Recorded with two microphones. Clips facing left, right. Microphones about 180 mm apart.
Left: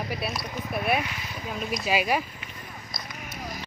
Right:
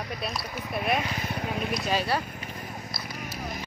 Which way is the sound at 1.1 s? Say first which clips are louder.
Right 4 dB; 55° right (ahead or behind).